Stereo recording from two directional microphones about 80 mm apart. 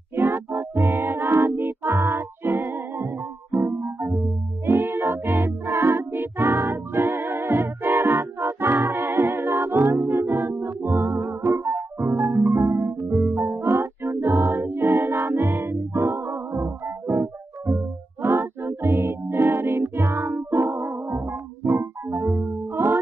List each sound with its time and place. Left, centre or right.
0.1 s music: right